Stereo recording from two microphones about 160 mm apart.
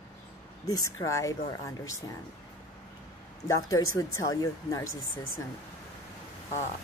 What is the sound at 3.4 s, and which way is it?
Speech, 20° left (ahead or behind).